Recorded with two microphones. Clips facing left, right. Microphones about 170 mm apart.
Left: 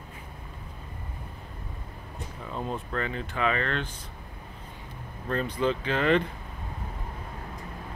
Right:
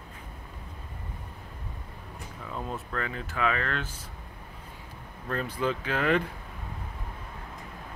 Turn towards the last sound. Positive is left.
turn(degrees=-5)  # may be behind; listen again after turning